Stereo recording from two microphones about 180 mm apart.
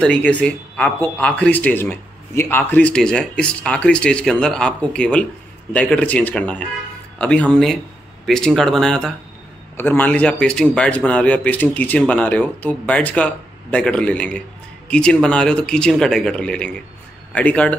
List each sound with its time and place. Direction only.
0.0 s a man's voice: 5° left (ahead or behind)